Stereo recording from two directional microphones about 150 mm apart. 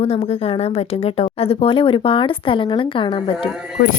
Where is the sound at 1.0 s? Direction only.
40° left (ahead or behind).